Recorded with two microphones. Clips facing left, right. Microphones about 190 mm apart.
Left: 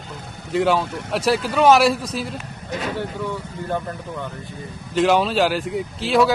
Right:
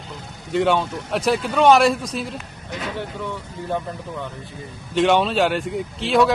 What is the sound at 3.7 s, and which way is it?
Speech, centre (ahead or behind).